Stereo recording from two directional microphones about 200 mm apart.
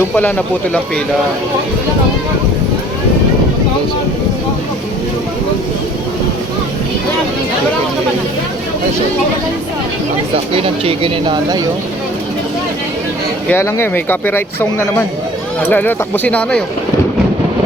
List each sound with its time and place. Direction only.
0.2 s speech: 5° left (ahead or behind)
10.3 s speech: 30° right (ahead or behind)
13.5 s speech: 10° left (ahead or behind)